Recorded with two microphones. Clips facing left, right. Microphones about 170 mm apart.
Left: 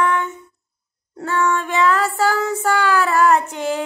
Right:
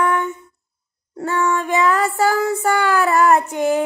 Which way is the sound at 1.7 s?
15° right (ahead or behind).